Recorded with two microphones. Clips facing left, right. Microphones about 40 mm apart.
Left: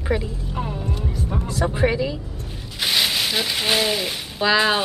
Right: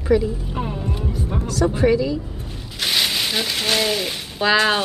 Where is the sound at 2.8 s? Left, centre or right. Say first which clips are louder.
Even; centre.